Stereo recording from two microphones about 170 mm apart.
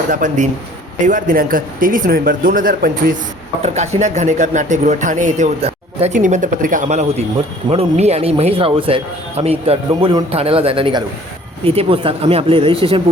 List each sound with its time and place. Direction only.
0.1 s speech: 50° right (ahead or behind)
3.6 s a man's voice: 40° right (ahead or behind)